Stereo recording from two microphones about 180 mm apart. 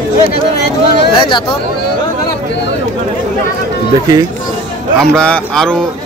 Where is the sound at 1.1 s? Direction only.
25° left (ahead or behind).